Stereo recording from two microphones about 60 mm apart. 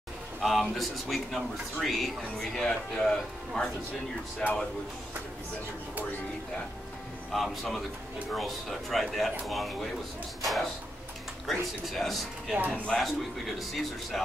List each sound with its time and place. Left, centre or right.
0.4 s speech: centre
7.3 s speech: centre
12.5 s speech: right
13.6 s speech: centre